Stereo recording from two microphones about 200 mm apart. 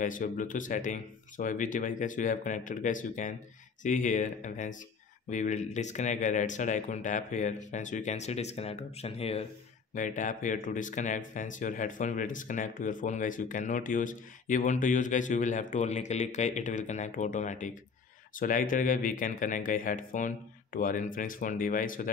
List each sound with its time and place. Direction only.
0.0 s speech: 40° left (ahead or behind)